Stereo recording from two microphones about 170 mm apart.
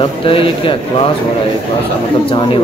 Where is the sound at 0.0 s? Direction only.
30° left (ahead or behind).